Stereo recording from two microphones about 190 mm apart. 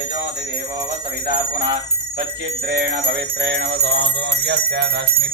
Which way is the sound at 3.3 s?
70° right (ahead or behind).